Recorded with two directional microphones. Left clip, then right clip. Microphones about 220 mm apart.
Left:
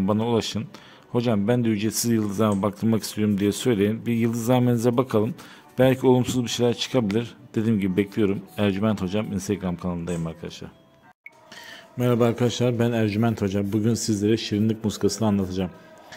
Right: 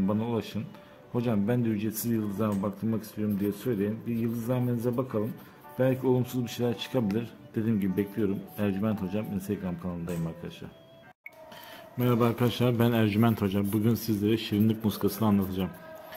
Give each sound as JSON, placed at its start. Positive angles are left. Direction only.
{"t": 0.0, "sound": "a man's voice", "side_deg": 30}
{"t": 12.0, "sound": "a man's voice", "side_deg": 20}